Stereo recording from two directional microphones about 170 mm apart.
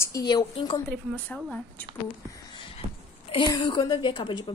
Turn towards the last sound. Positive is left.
turn(degrees=30)  # may be behind; listen again after turning